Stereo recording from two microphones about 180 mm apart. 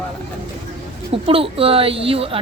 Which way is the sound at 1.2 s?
30° right (ahead or behind).